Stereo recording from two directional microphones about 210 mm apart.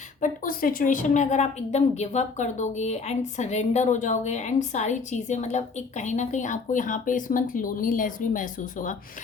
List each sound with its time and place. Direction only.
0.2 s a woman's voice: 40° left (ahead or behind)